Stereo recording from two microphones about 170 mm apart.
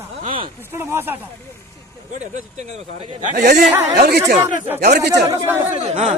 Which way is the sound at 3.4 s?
70° right (ahead or behind).